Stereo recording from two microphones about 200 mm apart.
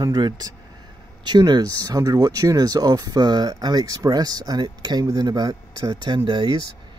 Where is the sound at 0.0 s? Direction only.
20° right (ahead or behind).